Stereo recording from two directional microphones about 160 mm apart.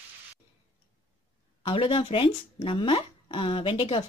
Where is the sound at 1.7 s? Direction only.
30° left (ahead or behind).